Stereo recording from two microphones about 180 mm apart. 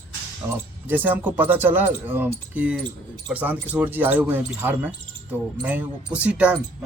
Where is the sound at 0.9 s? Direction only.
10° right (ahead or behind).